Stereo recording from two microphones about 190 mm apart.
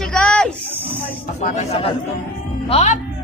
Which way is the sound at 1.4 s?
35° left (ahead or behind).